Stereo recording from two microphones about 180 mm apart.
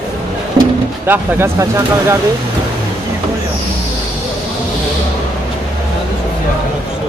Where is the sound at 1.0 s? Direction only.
15° right (ahead or behind).